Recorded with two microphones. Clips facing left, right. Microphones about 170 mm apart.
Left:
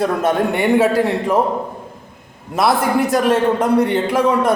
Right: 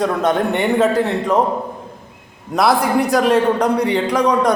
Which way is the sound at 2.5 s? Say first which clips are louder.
Right 1 dB; centre (ahead or behind).